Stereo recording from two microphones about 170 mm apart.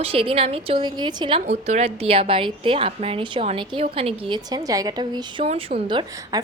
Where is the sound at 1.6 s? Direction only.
40° right (ahead or behind); by 5.5 s 25° right (ahead or behind).